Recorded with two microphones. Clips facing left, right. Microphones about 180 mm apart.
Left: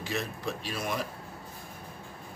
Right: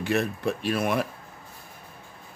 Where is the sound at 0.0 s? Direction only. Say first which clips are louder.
Right 8 dB; 60° right (ahead or behind).